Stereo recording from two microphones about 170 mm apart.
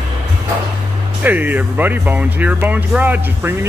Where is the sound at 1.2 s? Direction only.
10° right (ahead or behind).